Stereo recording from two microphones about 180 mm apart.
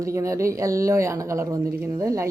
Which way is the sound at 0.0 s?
15° right (ahead or behind).